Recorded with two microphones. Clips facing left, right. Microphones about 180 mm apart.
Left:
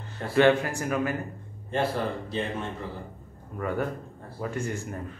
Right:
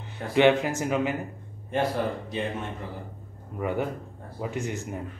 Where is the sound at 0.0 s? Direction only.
15° right (ahead or behind).